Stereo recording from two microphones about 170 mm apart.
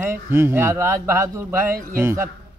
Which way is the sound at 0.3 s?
15° right (ahead or behind).